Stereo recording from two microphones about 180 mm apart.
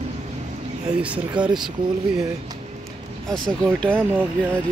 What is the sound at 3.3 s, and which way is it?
Speech, 5° left (ahead or behind).